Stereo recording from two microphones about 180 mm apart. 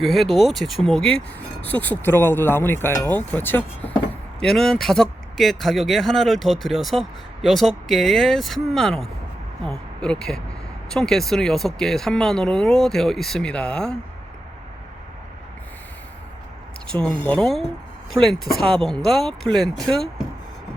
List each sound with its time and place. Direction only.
0.0 s speech: centre (ahead or behind)
16.9 s speech: 5° left (ahead or behind)